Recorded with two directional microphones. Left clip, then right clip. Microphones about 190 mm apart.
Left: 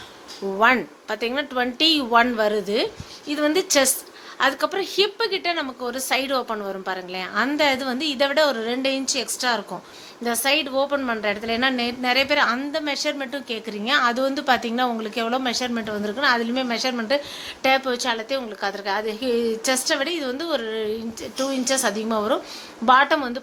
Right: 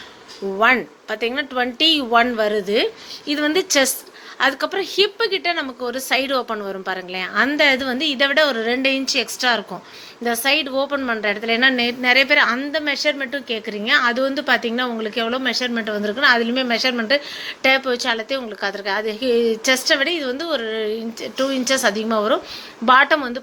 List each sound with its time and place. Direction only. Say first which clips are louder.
0.6 s a woman's voice: right 2 dB; 5° left (ahead or behind)